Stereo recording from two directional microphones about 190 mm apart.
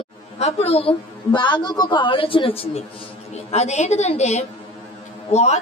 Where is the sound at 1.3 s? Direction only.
25° left (ahead or behind).